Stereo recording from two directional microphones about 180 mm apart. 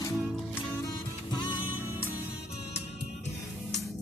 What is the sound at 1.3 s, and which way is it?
Music, 25° left (ahead or behind).